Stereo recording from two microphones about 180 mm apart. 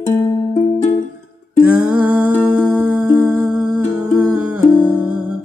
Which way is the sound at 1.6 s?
5° right (ahead or behind).